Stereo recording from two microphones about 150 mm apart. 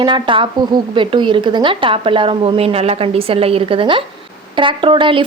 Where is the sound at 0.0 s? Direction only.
35° right (ahead or behind).